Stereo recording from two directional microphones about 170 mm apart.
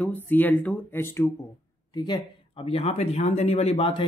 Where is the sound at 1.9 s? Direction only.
25° left (ahead or behind).